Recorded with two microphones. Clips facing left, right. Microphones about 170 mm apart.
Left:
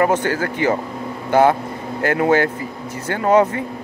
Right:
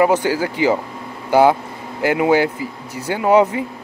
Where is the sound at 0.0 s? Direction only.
10° right (ahead or behind).